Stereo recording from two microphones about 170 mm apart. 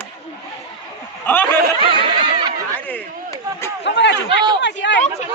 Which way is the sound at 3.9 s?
90° left.